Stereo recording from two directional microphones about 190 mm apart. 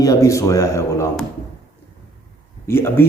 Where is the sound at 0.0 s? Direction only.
15° left (ahead or behind).